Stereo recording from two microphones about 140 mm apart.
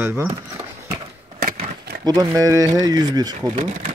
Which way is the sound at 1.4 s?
90° right.